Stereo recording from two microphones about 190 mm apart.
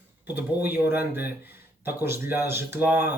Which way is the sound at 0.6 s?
10° right (ahead or behind).